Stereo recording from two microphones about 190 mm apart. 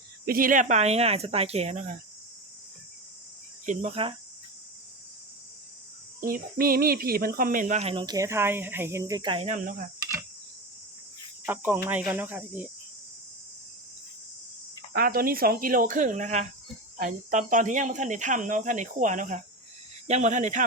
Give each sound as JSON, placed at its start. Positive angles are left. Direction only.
{"t": 0.3, "sound": "speech", "side_deg": -50}
{"t": 3.7, "sound": "speech", "side_deg": -35}
{"t": 6.1, "sound": "speech", "side_deg": -50}
{"t": 7.8, "sound": "speech", "side_deg": -30}
{"t": 8.0, "sound": "speech", "side_deg": -15}
{"t": 11.4, "sound": "speech", "side_deg": -10}
{"t": 14.9, "sound": "speech", "side_deg": -50}